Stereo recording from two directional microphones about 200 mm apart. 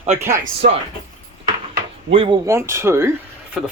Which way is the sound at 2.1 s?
25° right (ahead or behind).